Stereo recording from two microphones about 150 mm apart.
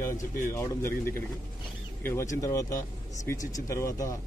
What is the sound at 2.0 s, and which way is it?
A man's voice, 15° left (ahead or behind).